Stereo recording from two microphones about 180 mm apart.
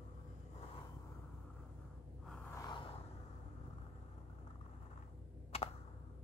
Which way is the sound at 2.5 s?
25° left (ahead or behind).